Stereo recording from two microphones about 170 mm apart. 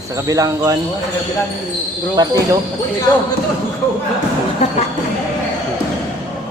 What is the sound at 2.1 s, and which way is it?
Speech, 20° right (ahead or behind).